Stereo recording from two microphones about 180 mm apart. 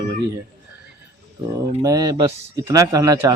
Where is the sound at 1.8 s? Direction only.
20° right (ahead or behind).